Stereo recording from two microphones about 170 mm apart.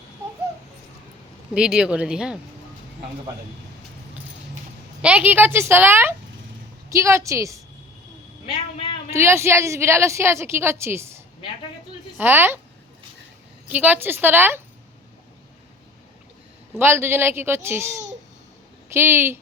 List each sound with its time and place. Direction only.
1.5 s speech: 5° right (ahead or behind)
5.0 s a woman's voice: 10° right (ahead or behind)
9.0 s a woman's voice: 15° right (ahead or behind)
13.7 s a woman's voice: 10° right (ahead or behind)
16.7 s a woman's voice: 15° right (ahead or behind)